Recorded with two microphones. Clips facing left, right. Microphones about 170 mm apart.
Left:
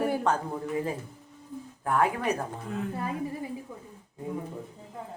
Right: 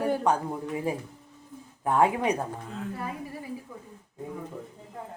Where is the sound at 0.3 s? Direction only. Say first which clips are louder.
Right 3 dB; 15° right (ahead or behind).